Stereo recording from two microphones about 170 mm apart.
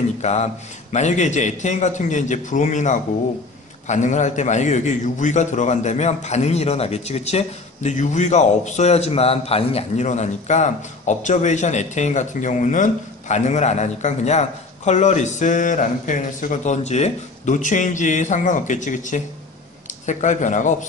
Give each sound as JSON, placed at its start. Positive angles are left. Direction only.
{"t": 0.2, "sound": "a man's voice", "side_deg": 40}